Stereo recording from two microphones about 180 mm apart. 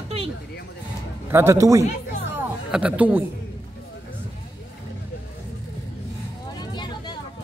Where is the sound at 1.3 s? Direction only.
15° right (ahead or behind).